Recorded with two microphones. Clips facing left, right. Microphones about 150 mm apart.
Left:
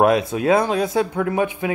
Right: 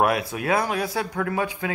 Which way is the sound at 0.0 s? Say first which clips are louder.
Left 6 dB; 25° left (ahead or behind).